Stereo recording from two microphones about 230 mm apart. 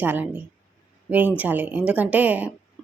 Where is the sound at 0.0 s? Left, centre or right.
Centre.